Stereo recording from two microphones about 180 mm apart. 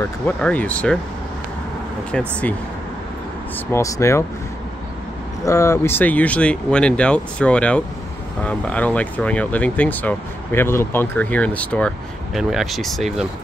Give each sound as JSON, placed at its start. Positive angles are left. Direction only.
{"t": 0.4, "sound": "speech", "side_deg": 10}
{"t": 2.1, "sound": "speech", "side_deg": 5}
{"t": 3.7, "sound": "speech", "side_deg": 15}
{"t": 5.4, "sound": "speech", "side_deg": 15}